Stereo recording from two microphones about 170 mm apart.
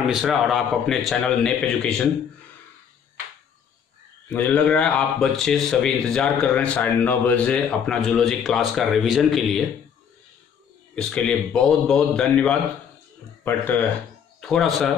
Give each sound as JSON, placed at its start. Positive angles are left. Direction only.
{"t": 0.1, "sound": "a man's voice", "side_deg": 0}
{"t": 4.3, "sound": "a man's voice", "side_deg": 10}
{"t": 11.0, "sound": "a man's voice", "side_deg": 5}